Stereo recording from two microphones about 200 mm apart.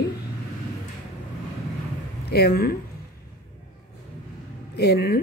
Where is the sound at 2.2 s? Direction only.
50° left (ahead or behind).